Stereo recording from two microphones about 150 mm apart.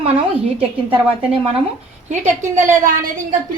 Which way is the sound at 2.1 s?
55° right (ahead or behind).